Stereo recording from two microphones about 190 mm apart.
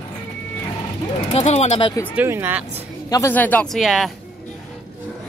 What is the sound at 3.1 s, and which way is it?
Speech, 15° left (ahead or behind).